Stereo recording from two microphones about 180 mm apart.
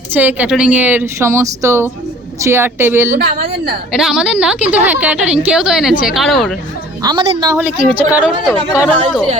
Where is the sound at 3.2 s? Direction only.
60° right (ahead or behind).